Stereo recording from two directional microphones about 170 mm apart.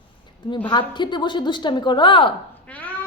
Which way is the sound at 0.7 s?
25° left (ahead or behind).